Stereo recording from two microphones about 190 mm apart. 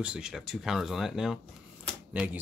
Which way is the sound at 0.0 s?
5° right (ahead or behind).